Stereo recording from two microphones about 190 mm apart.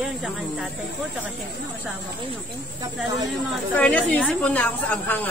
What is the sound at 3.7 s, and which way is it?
A woman's voice, 5° left (ahead or behind).